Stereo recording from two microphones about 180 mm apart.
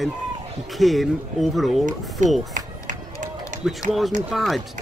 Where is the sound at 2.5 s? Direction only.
45° right (ahead or behind).